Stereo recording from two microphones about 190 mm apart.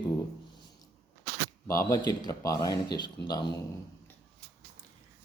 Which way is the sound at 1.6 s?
15° left (ahead or behind).